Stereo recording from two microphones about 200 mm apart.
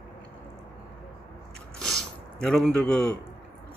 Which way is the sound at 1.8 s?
5° left (ahead or behind).